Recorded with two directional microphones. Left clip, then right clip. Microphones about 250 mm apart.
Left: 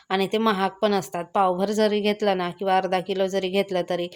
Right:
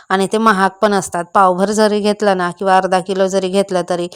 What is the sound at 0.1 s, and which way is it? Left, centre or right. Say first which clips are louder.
A woman's voice: right 9 dB; right.